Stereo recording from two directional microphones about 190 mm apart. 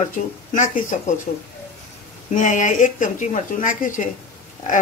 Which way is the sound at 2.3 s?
40° left (ahead or behind).